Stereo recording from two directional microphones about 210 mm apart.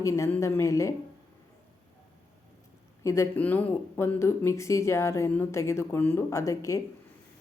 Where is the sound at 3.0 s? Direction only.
15° left (ahead or behind).